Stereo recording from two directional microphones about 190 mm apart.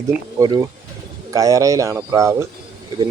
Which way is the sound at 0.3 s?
20° right (ahead or behind).